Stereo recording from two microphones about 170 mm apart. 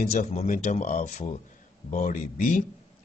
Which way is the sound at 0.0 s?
60° left (ahead or behind).